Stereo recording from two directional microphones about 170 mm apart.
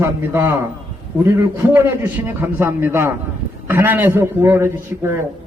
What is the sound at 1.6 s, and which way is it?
A man's voice, 10° right (ahead or behind).